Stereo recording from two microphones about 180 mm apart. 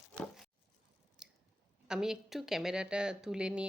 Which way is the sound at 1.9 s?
5° right (ahead or behind).